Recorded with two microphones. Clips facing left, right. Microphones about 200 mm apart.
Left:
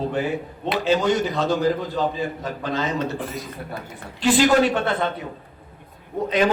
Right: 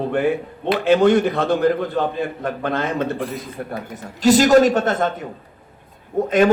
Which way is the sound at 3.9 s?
45° right (ahead or behind).